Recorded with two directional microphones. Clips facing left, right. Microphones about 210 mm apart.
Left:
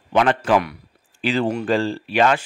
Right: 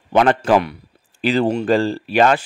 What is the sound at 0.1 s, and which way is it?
Speech, 40° right (ahead or behind).